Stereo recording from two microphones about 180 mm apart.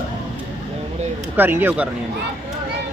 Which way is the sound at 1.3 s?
10° right (ahead or behind).